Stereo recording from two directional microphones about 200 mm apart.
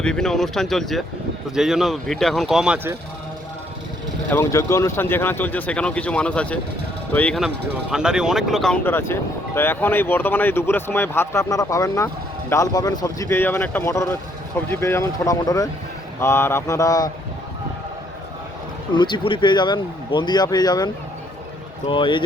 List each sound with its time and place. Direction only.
0.0 s speech: 5° left (ahead or behind)
4.3 s speech: 15° left (ahead or behind)
18.9 s speech: 25° left (ahead or behind)